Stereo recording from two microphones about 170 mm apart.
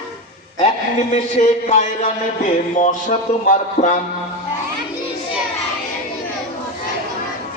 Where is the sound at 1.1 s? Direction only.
45° left (ahead or behind).